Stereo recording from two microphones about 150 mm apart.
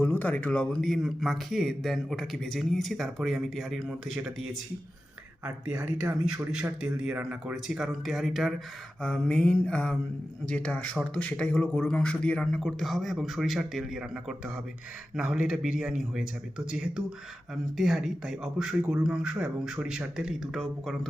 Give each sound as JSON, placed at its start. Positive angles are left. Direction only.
{"t": 0.0, "sound": "speech", "side_deg": 10}
{"t": 5.6, "sound": "speech", "side_deg": -10}
{"t": 9.0, "sound": "mantra", "side_deg": 5}
{"t": 11.1, "sound": "speech", "side_deg": 5}